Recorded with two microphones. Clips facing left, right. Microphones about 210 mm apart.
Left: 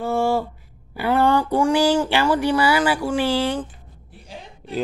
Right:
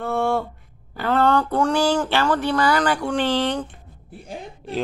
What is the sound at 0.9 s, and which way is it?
Speech, 10° left (ahead or behind).